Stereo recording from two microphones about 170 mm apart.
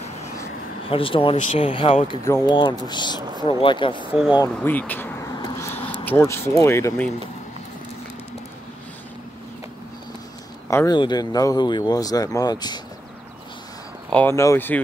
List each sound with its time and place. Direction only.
0.8 s speech: 30° left (ahead or behind)
4.1 s speech: 10° right (ahead or behind)
4.6 s a sound: 10° left (ahead or behind)
5.7 s a sound: 10° left (ahead or behind)
6.0 s speech: 15° left (ahead or behind)
10.7 s speech: 15° left (ahead or behind)
14.1 s speech: 15° left (ahead or behind)